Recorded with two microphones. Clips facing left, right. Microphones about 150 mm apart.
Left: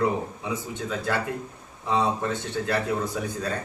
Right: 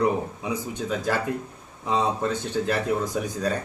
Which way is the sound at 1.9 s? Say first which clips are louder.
Right 1 dB; 15° right (ahead or behind).